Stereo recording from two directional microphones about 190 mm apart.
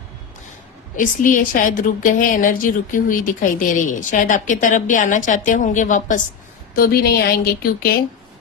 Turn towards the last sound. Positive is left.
turn(degrees=50)  # may be behind; listen again after turning